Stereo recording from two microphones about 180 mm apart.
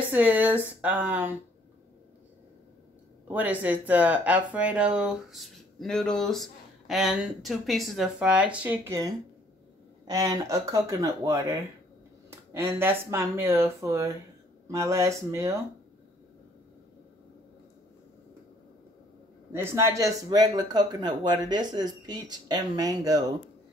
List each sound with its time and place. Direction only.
0.1 s speech: 10° right (ahead or behind)
3.3 s speech: 10° right (ahead or behind)
19.5 s speech: 15° right (ahead or behind)